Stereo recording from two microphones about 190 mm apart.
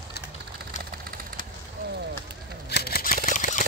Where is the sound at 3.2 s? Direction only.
45° left (ahead or behind).